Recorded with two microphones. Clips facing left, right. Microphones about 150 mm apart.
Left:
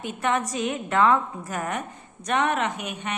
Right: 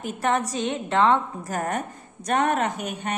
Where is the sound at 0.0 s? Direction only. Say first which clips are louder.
Right 1 dB; 40° right (ahead or behind).